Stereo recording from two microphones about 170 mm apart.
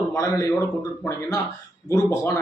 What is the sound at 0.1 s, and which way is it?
Speech, 20° left (ahead or behind).